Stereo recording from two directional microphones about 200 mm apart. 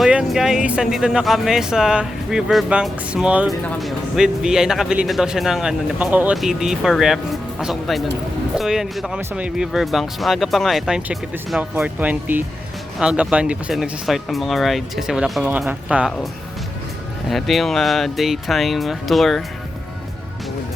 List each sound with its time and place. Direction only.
0.0 s speech: 5° right (ahead or behind)